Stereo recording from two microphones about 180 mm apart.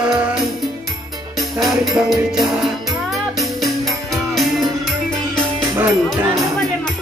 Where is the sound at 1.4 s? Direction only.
Centre (ahead or behind).